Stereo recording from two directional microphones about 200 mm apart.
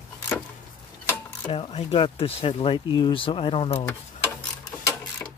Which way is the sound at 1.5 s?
30° left (ahead or behind).